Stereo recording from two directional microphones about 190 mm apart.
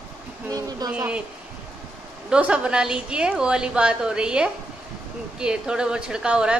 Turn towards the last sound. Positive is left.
turn(degrees=-5)  # may be behind; listen again after turning